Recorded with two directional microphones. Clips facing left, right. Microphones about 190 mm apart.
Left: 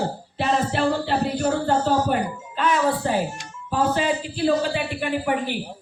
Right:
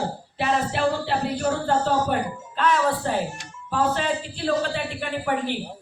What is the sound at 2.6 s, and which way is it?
A man's voice, 5° left (ahead or behind).